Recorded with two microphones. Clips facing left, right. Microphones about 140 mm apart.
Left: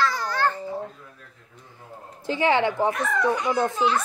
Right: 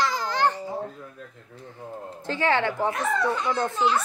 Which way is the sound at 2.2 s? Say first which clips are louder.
Left 3 dB; 15° left (ahead or behind).